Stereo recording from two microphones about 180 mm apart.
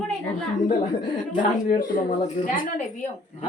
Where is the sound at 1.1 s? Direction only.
45° left (ahead or behind).